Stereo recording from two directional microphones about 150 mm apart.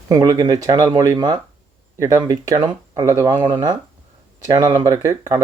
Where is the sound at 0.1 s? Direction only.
25° right (ahead or behind).